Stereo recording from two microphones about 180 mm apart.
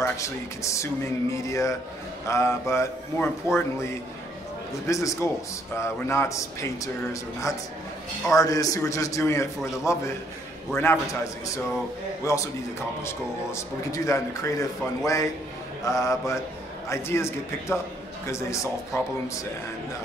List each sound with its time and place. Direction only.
0.0 s a man's voice: 15° left (ahead or behind)
15.8 s a man's voice: 15° left (ahead or behind)